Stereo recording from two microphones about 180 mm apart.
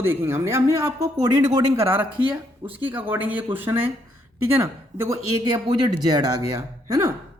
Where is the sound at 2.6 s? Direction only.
10° right (ahead or behind).